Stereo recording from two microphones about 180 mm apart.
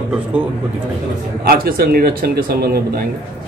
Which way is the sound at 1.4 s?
55° right (ahead or behind).